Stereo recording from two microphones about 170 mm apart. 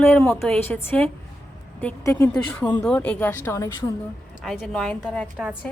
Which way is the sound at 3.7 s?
25° left (ahead or behind).